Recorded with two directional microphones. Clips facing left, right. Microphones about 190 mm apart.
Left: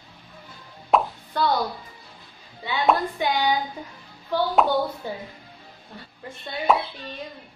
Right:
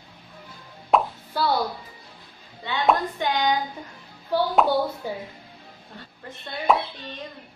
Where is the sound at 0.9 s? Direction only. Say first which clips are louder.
Even; centre (ahead or behind).